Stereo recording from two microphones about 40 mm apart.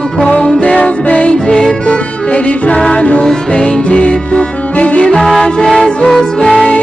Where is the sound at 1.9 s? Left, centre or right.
Left.